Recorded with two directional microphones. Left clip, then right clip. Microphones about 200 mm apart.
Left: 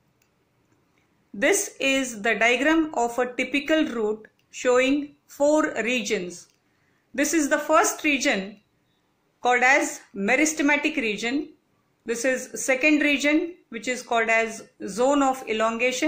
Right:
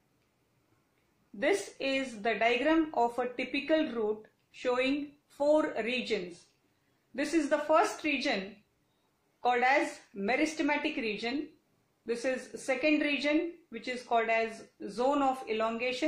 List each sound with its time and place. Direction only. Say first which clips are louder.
1.4 s speech: left 8 dB; 30° left (ahead or behind)
7.3 s speech: left 6 dB; 30° left (ahead or behind)
9.4 s speech: left 8 dB; 30° left (ahead or behind)